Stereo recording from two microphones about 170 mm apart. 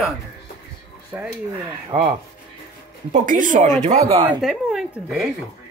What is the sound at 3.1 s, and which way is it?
Speech, 50° right (ahead or behind).